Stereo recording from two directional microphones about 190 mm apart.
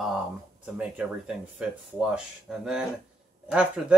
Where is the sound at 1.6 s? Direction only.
5° right (ahead or behind).